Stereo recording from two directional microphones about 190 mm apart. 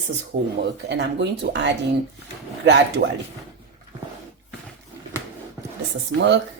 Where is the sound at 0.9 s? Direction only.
65° right (ahead or behind).